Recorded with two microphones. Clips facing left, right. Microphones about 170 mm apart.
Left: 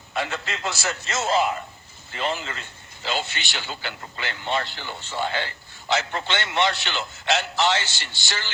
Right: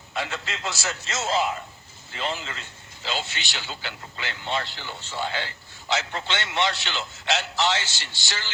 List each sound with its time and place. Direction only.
0.1 s a man's voice: 55° left (ahead or behind)